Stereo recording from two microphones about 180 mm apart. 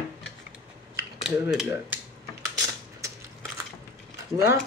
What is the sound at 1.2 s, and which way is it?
Mechanisms, 5° right (ahead or behind).